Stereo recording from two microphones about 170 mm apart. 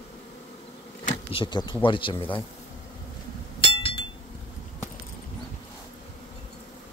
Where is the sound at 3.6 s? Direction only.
35° left (ahead or behind).